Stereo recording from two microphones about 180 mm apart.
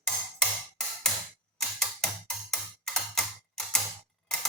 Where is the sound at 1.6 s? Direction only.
Centre (ahead or behind).